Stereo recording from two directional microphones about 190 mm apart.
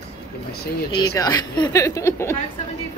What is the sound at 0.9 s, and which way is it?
A woman's voice, 20° left (ahead or behind).